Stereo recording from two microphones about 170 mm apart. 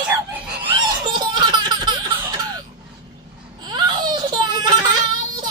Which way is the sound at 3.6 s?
25° right (ahead or behind).